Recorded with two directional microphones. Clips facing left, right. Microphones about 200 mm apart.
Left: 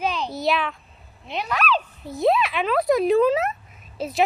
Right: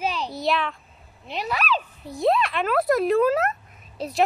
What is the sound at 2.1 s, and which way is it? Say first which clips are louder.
Speech: left 1 dB; centre (ahead or behind).